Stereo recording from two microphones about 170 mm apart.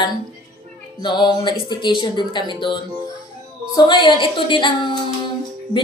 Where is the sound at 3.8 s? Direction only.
25° left (ahead or behind).